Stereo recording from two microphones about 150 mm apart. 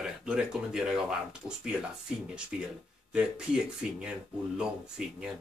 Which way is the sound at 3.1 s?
5° right (ahead or behind).